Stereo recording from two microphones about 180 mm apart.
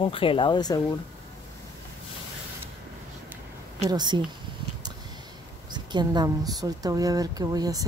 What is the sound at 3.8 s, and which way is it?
Speech, 25° right (ahead or behind).